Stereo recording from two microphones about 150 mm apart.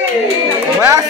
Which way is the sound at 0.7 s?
20° right (ahead or behind).